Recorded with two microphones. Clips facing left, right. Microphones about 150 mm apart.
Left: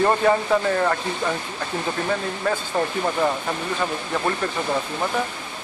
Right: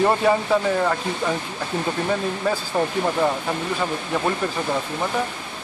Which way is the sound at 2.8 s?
15° right (ahead or behind).